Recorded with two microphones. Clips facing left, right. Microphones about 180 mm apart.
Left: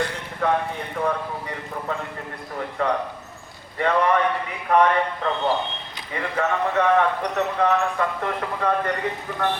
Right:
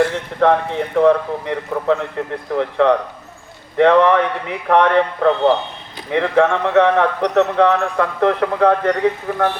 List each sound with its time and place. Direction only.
0.0 s speech: 75° right (ahead or behind)